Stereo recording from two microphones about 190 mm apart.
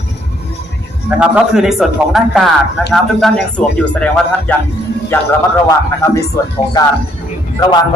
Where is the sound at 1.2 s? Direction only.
Centre (ahead or behind).